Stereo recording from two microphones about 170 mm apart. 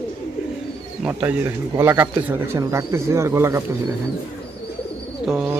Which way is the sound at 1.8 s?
15° right (ahead or behind).